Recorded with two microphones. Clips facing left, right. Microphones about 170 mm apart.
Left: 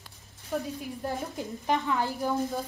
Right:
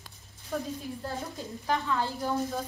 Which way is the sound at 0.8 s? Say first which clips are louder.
Left 3 dB; 15° left (ahead or behind).